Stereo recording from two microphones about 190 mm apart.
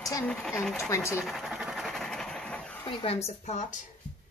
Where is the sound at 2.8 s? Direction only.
30° left (ahead or behind).